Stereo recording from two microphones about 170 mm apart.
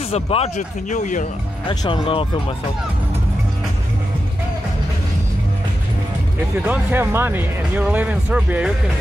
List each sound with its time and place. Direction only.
0.1 s speech: 35° left (ahead or behind)
1.7 s speech: 30° left (ahead or behind)
6.7 s speech: 10° right (ahead or behind)